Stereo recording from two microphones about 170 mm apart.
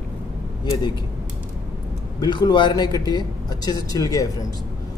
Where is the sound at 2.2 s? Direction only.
25° left (ahead or behind).